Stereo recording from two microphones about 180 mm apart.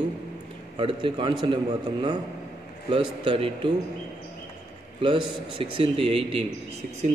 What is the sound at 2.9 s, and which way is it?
Speech, 30° right (ahead or behind).